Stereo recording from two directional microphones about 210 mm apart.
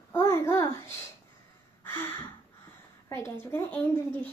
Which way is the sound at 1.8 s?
10° left (ahead or behind).